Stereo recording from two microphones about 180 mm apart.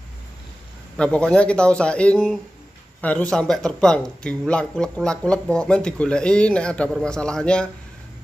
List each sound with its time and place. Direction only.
0.9 s speech: 5° left (ahead or behind)